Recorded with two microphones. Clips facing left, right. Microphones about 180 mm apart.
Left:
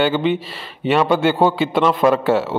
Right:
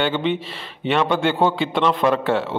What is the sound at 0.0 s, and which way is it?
A man's voice, 5° left (ahead or behind).